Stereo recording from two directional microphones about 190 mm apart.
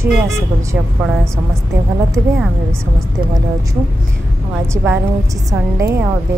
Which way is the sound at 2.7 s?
15° right (ahead or behind).